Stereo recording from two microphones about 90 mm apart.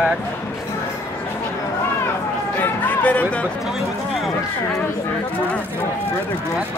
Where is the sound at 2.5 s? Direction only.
20° left (ahead or behind).